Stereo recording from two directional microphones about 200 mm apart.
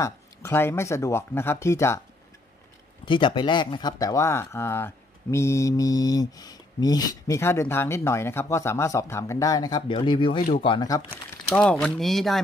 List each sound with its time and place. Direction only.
0.0 s speech: 15° left (ahead or behind)
3.1 s speech: 25° left (ahead or behind)
11.5 s speech: 5° left (ahead or behind)